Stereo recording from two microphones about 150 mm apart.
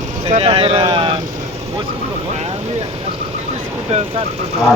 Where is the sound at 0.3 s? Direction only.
40° right (ahead or behind).